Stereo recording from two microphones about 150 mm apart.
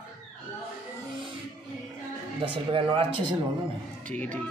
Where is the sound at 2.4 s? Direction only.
35° right (ahead or behind).